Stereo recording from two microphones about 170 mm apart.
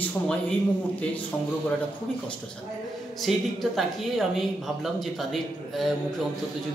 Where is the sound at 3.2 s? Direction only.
Centre (ahead or behind).